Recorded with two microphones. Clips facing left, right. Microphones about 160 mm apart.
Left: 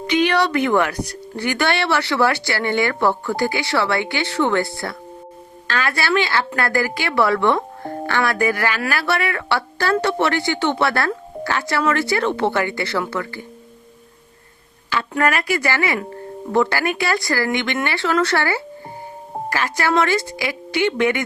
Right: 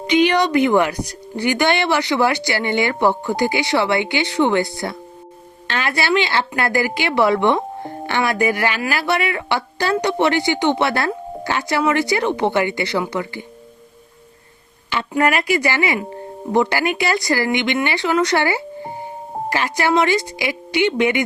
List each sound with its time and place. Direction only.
0.3 s speech: 15° right (ahead or behind)
15.1 s speech: 15° right (ahead or behind)